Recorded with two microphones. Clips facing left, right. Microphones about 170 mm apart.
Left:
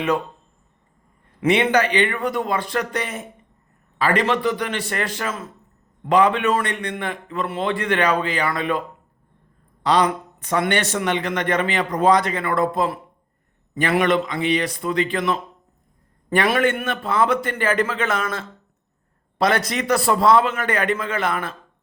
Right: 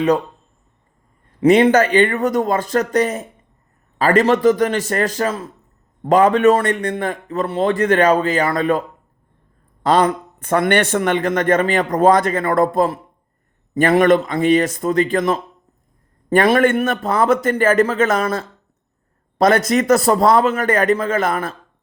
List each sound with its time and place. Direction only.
1.4 s a man's voice: 40° right (ahead or behind)
9.8 s a man's voice: 50° right (ahead or behind)